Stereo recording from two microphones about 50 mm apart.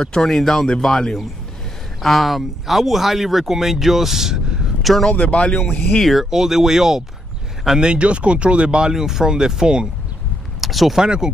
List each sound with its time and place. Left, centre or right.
0.0 s speech: centre
5.1 s speech: left
5.7 s speech: centre
6.3 s speech: centre
7.9 s speech: right
10.6 s speech: centre
11.0 s speech: centre